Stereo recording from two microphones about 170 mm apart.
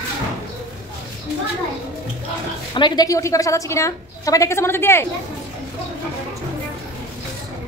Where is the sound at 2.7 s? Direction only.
25° left (ahead or behind).